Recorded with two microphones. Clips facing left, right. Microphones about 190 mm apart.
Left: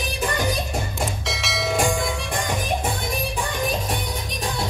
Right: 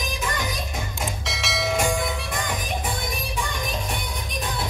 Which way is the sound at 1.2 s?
Centre (ahead or behind).